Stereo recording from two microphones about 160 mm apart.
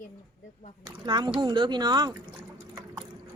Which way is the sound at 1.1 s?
25° right (ahead or behind).